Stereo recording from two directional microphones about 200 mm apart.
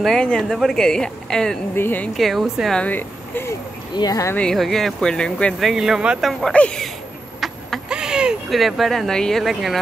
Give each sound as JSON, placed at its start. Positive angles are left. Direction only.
{"t": 0.0, "sound": "speech", "side_deg": 5}
{"t": 4.4, "sound": "speech", "side_deg": 0}
{"t": 7.3, "sound": "a sound", "side_deg": 0}